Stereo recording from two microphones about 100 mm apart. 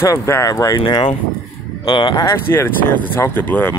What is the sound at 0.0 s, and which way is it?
Speech, 30° left (ahead or behind).